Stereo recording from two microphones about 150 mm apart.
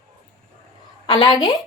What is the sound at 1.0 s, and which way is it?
Speech, 35° left (ahead or behind).